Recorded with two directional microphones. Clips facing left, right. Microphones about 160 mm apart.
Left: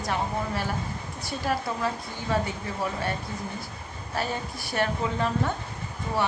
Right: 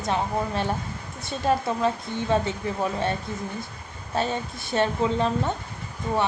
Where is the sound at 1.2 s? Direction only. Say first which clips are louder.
Right 5 dB; 25° right (ahead or behind).